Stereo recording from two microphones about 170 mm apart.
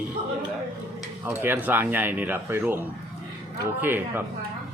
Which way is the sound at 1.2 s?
10° right (ahead or behind).